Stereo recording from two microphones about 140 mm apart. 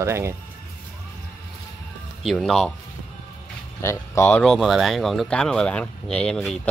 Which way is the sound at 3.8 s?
20° left (ahead or behind).